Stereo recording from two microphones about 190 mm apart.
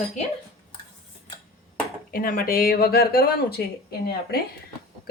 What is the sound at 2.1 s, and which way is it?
Speech, 50° left (ahead or behind).